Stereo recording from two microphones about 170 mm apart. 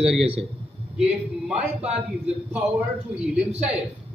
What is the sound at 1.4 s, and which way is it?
A man's voice, 5° right (ahead or behind).